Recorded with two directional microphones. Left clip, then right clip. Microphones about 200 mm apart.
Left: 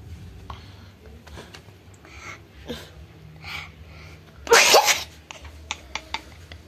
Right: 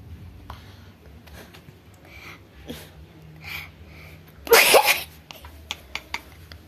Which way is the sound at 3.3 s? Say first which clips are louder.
Even; 5° right (ahead or behind).